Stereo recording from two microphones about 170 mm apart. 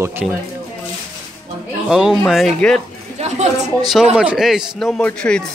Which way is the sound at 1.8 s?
5° right (ahead or behind).